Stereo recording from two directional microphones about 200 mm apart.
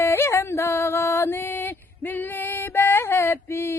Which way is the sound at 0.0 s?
10° left (ahead or behind).